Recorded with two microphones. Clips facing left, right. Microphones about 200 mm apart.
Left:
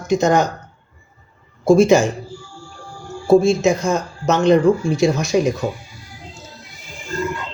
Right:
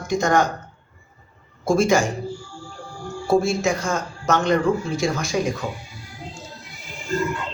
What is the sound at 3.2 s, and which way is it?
Speech, 20° left (ahead or behind).